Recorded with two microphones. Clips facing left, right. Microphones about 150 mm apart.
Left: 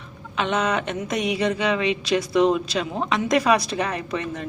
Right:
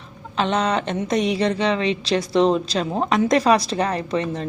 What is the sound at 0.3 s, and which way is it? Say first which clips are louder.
Speech: right 2 dB; 35° right (ahead or behind).